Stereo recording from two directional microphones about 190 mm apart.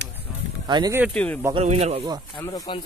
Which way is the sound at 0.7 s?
25° right (ahead or behind).